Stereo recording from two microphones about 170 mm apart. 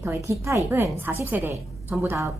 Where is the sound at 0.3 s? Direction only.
15° right (ahead or behind).